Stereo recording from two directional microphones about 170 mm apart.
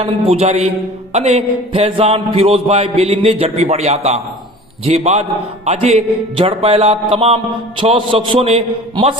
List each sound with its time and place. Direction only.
0.0 s speech: 35° right (ahead or behind)